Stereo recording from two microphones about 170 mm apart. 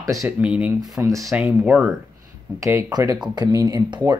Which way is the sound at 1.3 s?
5° right (ahead or behind).